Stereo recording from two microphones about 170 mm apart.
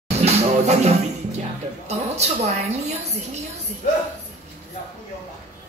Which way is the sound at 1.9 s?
40° right (ahead or behind).